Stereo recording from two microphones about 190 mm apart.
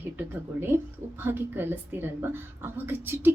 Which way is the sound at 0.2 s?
10° right (ahead or behind).